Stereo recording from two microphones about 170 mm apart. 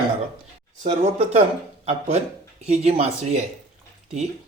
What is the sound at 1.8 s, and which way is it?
Speech, 35° right (ahead or behind).